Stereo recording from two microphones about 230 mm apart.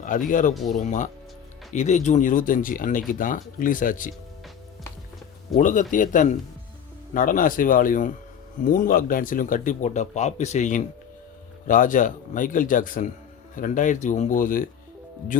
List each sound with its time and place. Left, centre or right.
0.0 s speech: left
5.5 s speech: left